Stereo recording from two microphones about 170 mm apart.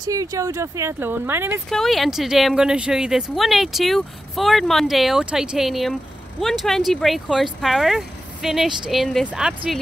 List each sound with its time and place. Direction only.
0.0 s speech: 20° right (ahead or behind)
1.7 s a woman's voice: centre (ahead or behind)